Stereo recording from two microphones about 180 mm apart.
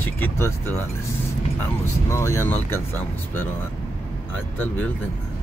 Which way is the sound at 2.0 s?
15° left (ahead or behind).